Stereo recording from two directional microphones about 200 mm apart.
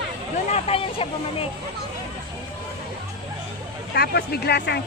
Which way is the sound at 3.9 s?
50° left (ahead or behind).